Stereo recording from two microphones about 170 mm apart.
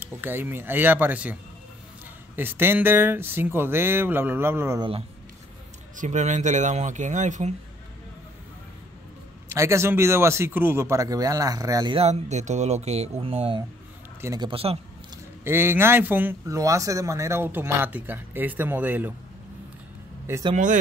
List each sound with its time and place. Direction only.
0.0 s speech: 10° right (ahead or behind)
5.9 s speech: 45° right (ahead or behind)
9.5 s speech: 15° right (ahead or behind)
12.0 s speech: 40° right (ahead or behind)
14.2 s speech: 20° right (ahead or behind)
14.5 s speech: 35° right (ahead or behind)
15.4 s speech: 15° right (ahead or behind)